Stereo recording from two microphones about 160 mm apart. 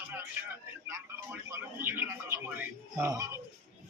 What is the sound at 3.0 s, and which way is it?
Speech, 20° right (ahead or behind).